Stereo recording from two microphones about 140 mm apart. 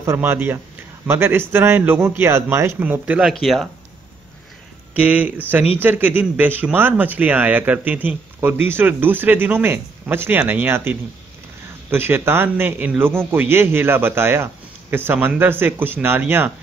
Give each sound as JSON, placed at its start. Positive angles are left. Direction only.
{"t": 0.0, "sound": "speech", "side_deg": -20}
{"t": 5.0, "sound": "speech", "side_deg": -10}